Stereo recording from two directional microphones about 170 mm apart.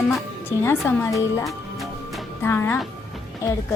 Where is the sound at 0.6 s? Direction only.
15° left (ahead or behind).